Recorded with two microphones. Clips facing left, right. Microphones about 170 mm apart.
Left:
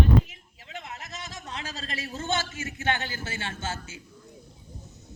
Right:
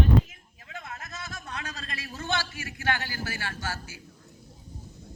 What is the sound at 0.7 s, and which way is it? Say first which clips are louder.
A man's voice: left 1 dB; 20° left (ahead or behind).